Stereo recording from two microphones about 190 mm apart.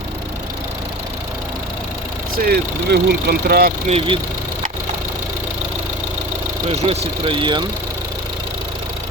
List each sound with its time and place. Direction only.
2.3 s speech: 50° right (ahead or behind)
3.8 s speech: 30° right (ahead or behind)
6.7 s speech: 30° right (ahead or behind)